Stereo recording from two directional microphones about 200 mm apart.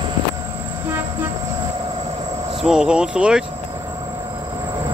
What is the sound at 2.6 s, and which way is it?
Speech, 5° right (ahead or behind).